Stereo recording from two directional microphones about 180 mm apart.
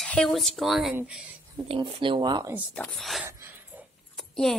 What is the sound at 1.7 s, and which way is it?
Speech, 30° right (ahead or behind).